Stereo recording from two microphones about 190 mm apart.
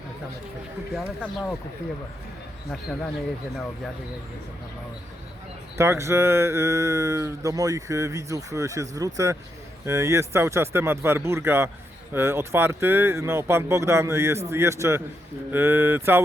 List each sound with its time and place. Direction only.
0.9 s speech: centre (ahead or behind)
5.7 s speech: 15° right (ahead or behind)